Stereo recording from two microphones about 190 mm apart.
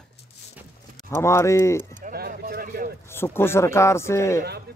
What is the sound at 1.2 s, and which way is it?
Speech, 15° left (ahead or behind).